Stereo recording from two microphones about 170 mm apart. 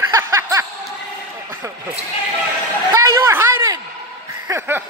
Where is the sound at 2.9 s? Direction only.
15° right (ahead or behind).